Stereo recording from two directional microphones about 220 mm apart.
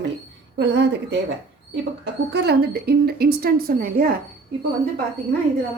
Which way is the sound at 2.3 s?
50° right (ahead or behind).